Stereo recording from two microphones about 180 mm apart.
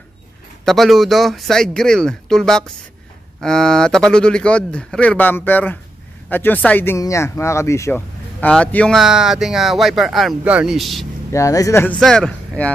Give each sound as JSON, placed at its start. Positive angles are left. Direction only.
{"t": 0.7, "sound": "speech", "side_deg": 0}
{"t": 11.3, "sound": "speech", "side_deg": 20}